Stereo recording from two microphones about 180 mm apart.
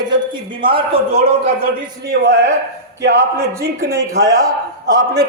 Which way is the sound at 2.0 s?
70° right (ahead or behind).